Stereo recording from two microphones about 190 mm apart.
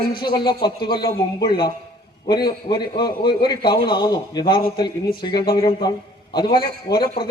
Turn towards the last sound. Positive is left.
turn(degrees=25)  # may be behind; listen again after turning